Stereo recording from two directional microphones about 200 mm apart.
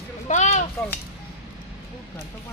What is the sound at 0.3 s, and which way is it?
Speech, 35° left (ahead or behind).